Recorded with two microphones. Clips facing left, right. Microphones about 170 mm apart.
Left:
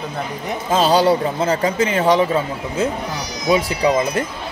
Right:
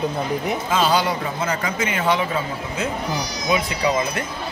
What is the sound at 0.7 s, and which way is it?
A man's voice, 35° left (ahead or behind).